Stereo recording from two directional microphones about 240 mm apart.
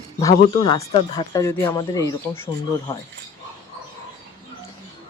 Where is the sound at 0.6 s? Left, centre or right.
Centre.